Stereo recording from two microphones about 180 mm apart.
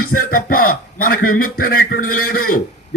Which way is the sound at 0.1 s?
50° left (ahead or behind).